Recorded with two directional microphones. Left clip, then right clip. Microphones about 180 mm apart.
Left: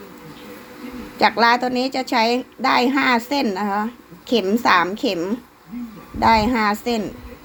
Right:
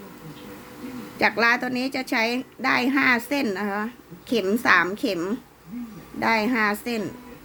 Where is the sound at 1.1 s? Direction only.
15° right (ahead or behind).